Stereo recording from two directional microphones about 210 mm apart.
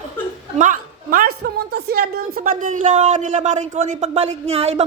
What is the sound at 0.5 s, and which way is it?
A woman's voice, 35° right (ahead or behind).